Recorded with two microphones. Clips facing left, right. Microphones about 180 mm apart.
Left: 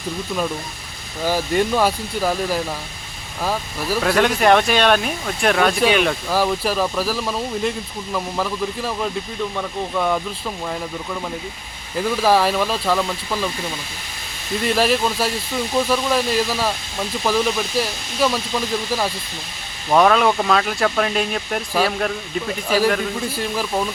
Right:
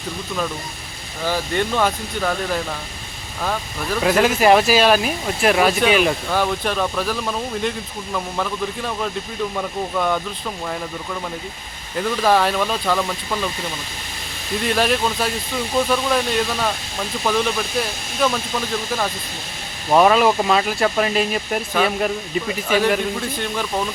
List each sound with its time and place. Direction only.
1.2 s speech: 10° left (ahead or behind)
11.9 s speech: 5° left (ahead or behind)
14.8 s speech: centre (ahead or behind)
19.9 s speech: 5° right (ahead or behind)